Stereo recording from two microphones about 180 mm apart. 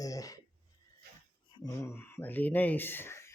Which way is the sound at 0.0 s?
20° left (ahead or behind).